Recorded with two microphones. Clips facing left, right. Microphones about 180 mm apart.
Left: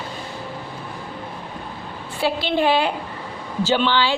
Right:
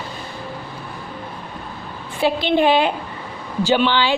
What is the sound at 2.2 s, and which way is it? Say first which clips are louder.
A woman's voice: right 3 dB; 20° right (ahead or behind).